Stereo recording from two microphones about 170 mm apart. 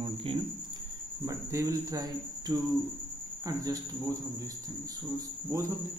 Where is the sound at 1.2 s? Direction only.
15° right (ahead or behind).